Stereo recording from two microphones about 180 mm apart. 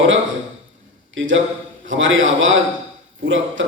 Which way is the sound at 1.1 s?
90° right.